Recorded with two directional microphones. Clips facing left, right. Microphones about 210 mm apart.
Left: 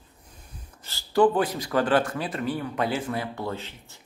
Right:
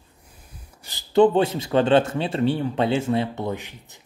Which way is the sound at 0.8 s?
20° right (ahead or behind).